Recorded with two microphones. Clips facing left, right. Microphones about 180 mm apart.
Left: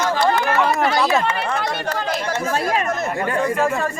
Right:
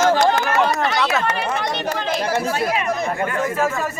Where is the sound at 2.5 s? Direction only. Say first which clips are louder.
Left 1 dB; 40° left (ahead or behind).